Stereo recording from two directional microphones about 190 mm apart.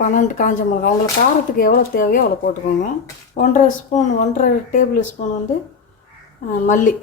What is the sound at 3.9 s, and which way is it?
A woman's voice, 40° left (ahead or behind).